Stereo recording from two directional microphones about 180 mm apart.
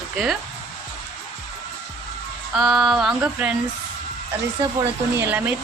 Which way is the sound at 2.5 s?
Centre (ahead or behind).